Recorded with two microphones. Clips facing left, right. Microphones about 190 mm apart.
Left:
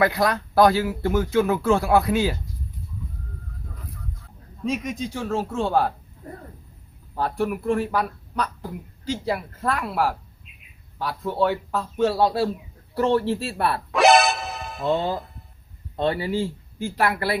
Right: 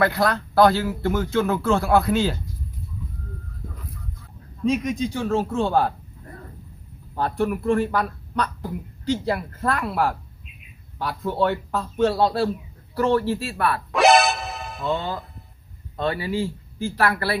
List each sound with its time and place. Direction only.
0.0 s speech: 15° left (ahead or behind)
4.6 s speech: 5° left (ahead or behind)
7.2 s speech: 5° left (ahead or behind)
12.9 s speech: 25° left (ahead or behind)
13.9 s music: centre (ahead or behind)
16.0 s speech: 25° left (ahead or behind)